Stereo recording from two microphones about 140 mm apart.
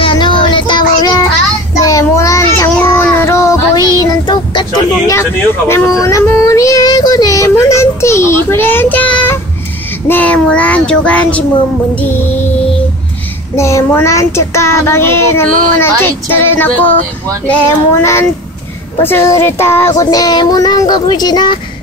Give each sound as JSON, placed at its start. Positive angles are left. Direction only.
{"t": 0.0, "sound": "child singing", "side_deg": 35}
{"t": 5.7, "sound": "child singing", "side_deg": 20}
{"t": 13.6, "sound": "child singing", "side_deg": 20}
{"t": 18.0, "sound": "child singing", "side_deg": 20}